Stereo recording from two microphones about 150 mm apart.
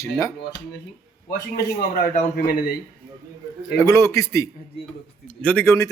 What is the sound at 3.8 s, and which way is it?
Speech, 15° left (ahead or behind).